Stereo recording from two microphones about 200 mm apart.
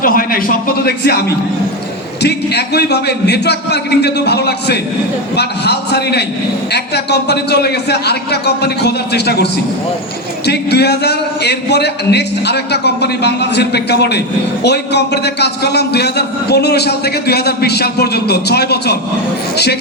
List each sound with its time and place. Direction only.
0.0 s a man's voice: 45° left (ahead or behind)
2.2 s a man's voice: 55° left (ahead or behind)